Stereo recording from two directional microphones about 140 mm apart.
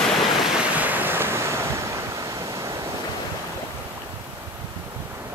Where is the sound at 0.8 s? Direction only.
15° right (ahead or behind).